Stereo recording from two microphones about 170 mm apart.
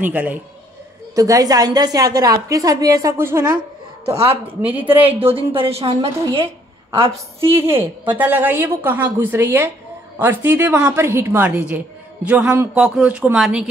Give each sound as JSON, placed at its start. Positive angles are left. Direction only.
{"t": 0.0, "sound": "a woman's voice", "side_deg": -10}
{"t": 1.1, "sound": "a woman's voice", "side_deg": -20}
{"t": 4.0, "sound": "speech", "side_deg": -35}
{"t": 4.6, "sound": "a woman's voice", "side_deg": -10}
{"t": 5.3, "sound": "a woman's voice", "side_deg": -30}
{"t": 7.3, "sound": "a woman's voice", "side_deg": -15}